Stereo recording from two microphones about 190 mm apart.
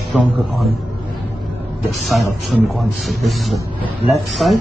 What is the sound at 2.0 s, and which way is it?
Speech, centre (ahead or behind).